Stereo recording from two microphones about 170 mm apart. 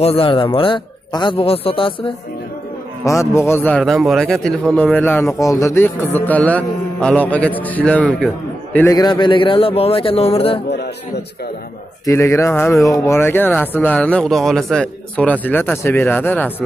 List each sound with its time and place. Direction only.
0.0 s a man's voice: 35° left (ahead or behind)
3.0 s a man's voice: 15° left (ahead or behind)
8.9 s a man's voice: 25° left (ahead or behind)
12.1 s a man's voice: 15° left (ahead or behind)